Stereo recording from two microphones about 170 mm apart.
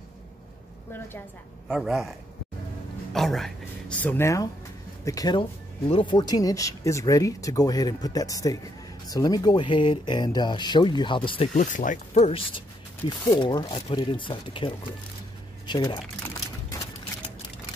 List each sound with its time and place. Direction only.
0.9 s speech: 15° left (ahead or behind)
1.7 s speech: centre (ahead or behind)
4.0 s speech: 15° left (ahead or behind); by 11.5 s 30° left (ahead or behind)
11.5 s speech: 50° left (ahead or behind); by 16.0 s 25° left (ahead or behind)